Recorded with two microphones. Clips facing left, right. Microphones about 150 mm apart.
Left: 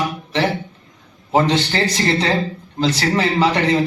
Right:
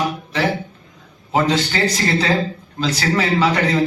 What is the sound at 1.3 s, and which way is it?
A man's voice, 25° left (ahead or behind).